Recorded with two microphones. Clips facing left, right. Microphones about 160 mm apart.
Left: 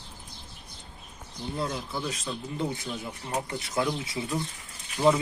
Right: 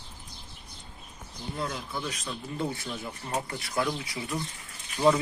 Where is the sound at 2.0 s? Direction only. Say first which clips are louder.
Left 2 dB; 30° left (ahead or behind).